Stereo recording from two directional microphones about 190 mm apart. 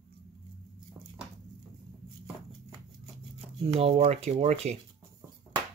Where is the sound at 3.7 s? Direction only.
30° right (ahead or behind).